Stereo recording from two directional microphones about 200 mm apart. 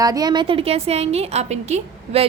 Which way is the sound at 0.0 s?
20° right (ahead or behind).